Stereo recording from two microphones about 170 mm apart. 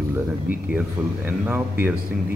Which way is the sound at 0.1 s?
10° right (ahead or behind).